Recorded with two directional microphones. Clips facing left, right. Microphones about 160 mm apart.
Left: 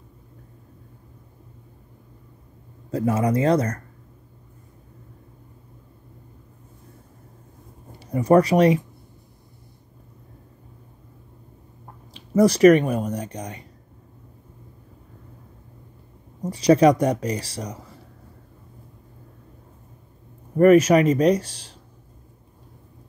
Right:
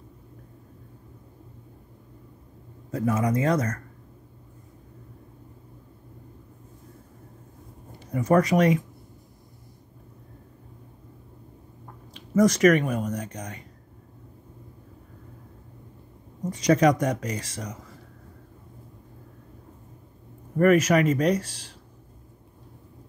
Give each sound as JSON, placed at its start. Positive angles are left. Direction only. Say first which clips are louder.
{"t": 2.9, "sound": "speech", "louder": "left 3 dB", "side_deg": 30}
{"t": 8.1, "sound": "speech", "louder": "left 4 dB", "side_deg": 30}
{"t": 12.4, "sound": "speech", "louder": "left 5 dB", "side_deg": 30}
{"t": 16.4, "sound": "speech", "louder": "left 4 dB", "side_deg": 30}
{"t": 20.5, "sound": "speech", "louder": "left 5 dB", "side_deg": 30}